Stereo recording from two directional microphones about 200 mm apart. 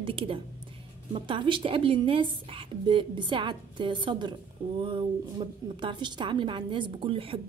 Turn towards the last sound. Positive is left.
turn(degrees=-25)  # may be behind; listen again after turning